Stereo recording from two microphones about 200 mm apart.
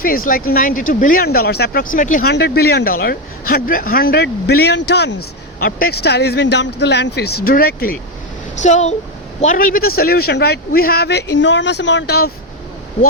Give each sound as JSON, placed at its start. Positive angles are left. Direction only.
{"t": 0.3, "sound": "a man's voice", "side_deg": 45}
{"t": 2.3, "sound": "a man's voice", "side_deg": 50}
{"t": 8.6, "sound": "a man's voice", "side_deg": 35}